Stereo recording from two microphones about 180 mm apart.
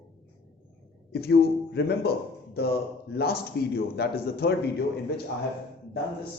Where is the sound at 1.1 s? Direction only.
60° left (ahead or behind).